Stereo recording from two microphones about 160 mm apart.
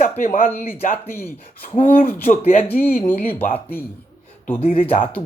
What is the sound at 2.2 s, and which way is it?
Speech, 50° left (ahead or behind).